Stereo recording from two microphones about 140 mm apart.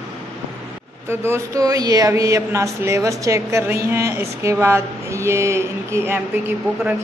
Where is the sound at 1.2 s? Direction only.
20° right (ahead or behind).